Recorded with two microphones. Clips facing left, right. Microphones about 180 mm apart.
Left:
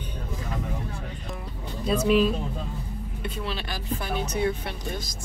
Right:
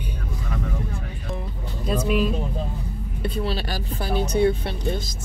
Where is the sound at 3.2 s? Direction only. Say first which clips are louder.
Right 6 dB; 35° right (ahead or behind).